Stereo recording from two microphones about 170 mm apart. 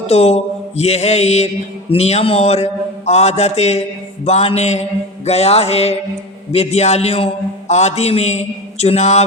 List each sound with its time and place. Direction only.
0.1 s mantra: 40° left (ahead or behind)